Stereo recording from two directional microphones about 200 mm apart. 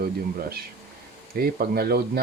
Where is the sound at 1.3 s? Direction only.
50° right (ahead or behind).